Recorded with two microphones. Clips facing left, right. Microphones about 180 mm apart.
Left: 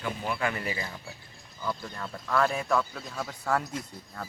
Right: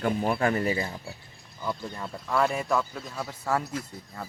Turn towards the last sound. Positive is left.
turn(degrees=-5)  # may be behind; listen again after turning